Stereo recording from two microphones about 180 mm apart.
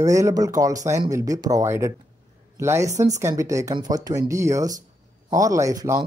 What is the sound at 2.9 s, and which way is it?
Speech, 40° right (ahead or behind).